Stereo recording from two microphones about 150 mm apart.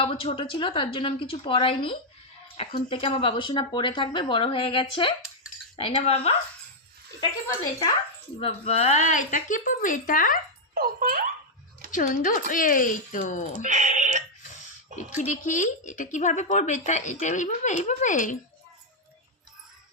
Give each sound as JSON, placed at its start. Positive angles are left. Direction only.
{"t": 0.0, "sound": "speech", "side_deg": 40}
{"t": 8.4, "sound": "speech", "side_deg": 40}
{"t": 10.8, "sound": "a child's voice", "side_deg": -75}
{"t": 11.9, "sound": "speech", "side_deg": 60}
{"t": 13.6, "sound": "a sound", "side_deg": -55}
{"t": 14.9, "sound": "speech", "side_deg": 55}